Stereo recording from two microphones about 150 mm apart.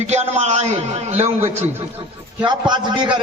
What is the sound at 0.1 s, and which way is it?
Speech, 50° right (ahead or behind).